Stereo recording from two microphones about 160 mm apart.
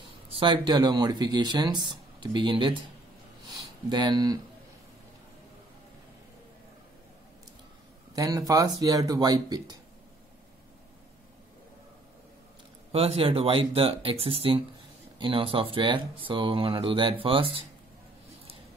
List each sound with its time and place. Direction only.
0.3 s speech: 30° right (ahead or behind)
3.4 s a sound: 25° right (ahead or behind)
8.1 s speech: 20° right (ahead or behind)
12.9 s speech: 40° right (ahead or behind)